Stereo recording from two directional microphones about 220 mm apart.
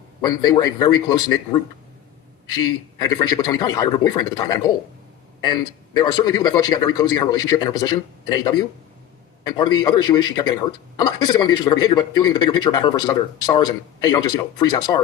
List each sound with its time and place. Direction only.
0.2 s a man's voice: 20° left (ahead or behind)